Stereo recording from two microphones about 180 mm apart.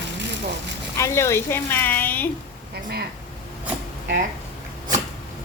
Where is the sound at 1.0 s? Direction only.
15° left (ahead or behind).